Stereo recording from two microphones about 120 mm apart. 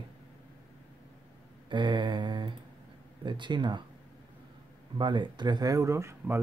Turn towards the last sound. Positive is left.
turn(degrees=-20)  # may be behind; listen again after turning